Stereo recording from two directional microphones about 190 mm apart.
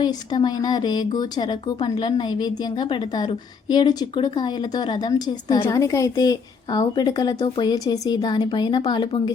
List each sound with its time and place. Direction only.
0.0 s speech: 25° left (ahead or behind)